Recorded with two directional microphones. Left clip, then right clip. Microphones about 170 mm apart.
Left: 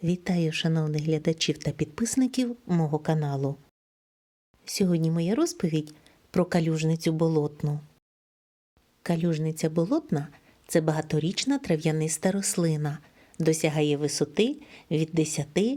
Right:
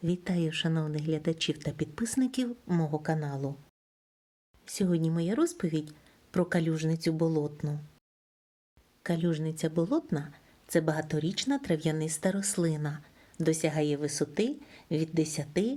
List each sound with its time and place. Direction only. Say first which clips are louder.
0.0 s speech: left 3 dB; 30° left (ahead or behind)
4.6 s speech: left 4 dB; 30° left (ahead or behind)
9.0 s speech: left 3 dB; 30° left (ahead or behind)